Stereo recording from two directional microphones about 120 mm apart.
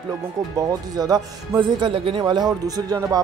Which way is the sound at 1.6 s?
45° right (ahead or behind).